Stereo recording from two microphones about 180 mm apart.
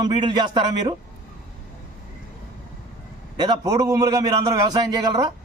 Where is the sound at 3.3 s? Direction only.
20° right (ahead or behind).